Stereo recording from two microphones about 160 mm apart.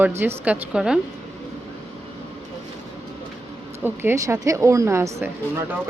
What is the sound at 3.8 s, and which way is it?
A woman's voice, 15° right (ahead or behind).